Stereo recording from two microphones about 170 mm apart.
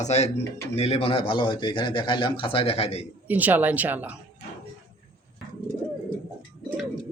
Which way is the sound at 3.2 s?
10° right (ahead or behind).